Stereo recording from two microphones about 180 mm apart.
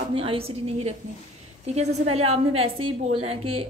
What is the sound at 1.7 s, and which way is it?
A woman's voice, 35° right (ahead or behind).